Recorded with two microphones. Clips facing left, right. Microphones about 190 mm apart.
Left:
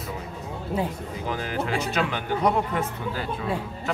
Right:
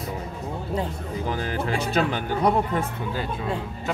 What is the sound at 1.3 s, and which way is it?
Speech, 35° right (ahead or behind).